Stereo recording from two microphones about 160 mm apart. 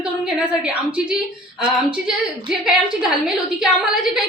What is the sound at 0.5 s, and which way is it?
A woman's voice, 5° right (ahead or behind).